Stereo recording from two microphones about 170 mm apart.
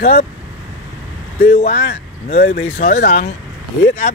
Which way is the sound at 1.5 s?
35° left (ahead or behind).